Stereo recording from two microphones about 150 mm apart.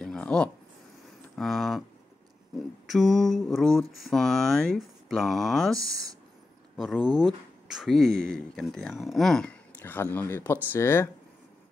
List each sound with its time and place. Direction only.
0.0 s a sound: 5° left (ahead or behind)
1.3 s speech: centre (ahead or behind)
2.9 s speech: centre (ahead or behind)
5.8 s speech: 20° right (ahead or behind)
6.8 s speech: centre (ahead or behind); by 11.1 s 15° left (ahead or behind)